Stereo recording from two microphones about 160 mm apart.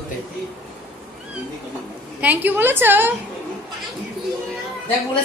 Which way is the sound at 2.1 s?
10° right (ahead or behind).